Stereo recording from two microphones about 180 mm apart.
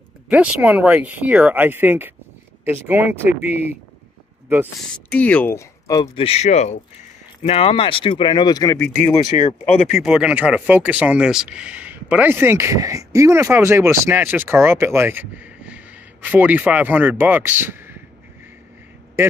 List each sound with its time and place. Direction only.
0.3 s speech: 5° right (ahead or behind)
5.1 s speech: 5° left (ahead or behind)
6.1 s speech: 35° left (ahead or behind)
9.5 s speech: 40° left (ahead or behind)
9.9 s speech: 5° right (ahead or behind)
19.2 s a man's voice: 15° right (ahead or behind)